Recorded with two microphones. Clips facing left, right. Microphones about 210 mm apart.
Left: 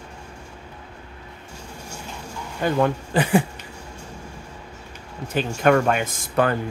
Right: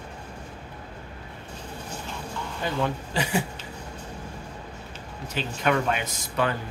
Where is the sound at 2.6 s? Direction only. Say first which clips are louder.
Left 7 dB; 55° left (ahead or behind).